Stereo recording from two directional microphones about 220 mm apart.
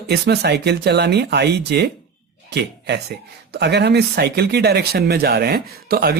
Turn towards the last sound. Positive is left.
turn(degrees=-45)  # may be behind; listen again after turning